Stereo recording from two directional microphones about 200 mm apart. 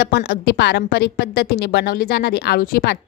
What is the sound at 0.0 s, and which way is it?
A woman's voice, 55° left (ahead or behind).